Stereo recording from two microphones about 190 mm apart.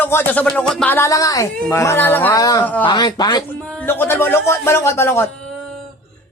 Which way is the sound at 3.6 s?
5° left (ahead or behind).